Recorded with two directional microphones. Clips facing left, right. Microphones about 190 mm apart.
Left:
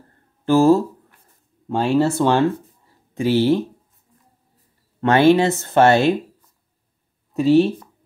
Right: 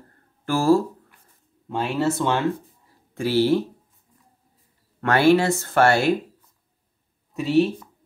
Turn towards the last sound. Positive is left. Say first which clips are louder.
# left 5 dB
turn(degrees=30)  # may be behind; listen again after turning